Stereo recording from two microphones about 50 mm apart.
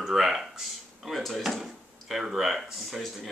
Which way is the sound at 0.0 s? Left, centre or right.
Centre.